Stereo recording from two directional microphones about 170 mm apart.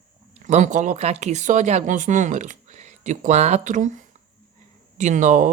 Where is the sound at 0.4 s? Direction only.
45° right (ahead or behind).